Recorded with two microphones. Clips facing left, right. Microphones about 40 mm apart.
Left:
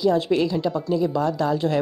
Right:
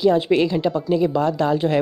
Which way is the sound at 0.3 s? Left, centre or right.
Right.